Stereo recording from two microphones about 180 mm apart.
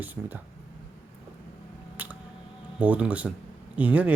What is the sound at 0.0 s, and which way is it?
Speech, 10° right (ahead or behind).